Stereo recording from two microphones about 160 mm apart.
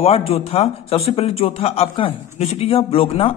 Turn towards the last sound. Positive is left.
turn(degrees=35)  # may be behind; listen again after turning